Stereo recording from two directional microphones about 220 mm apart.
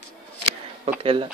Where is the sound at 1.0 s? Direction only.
25° right (ahead or behind).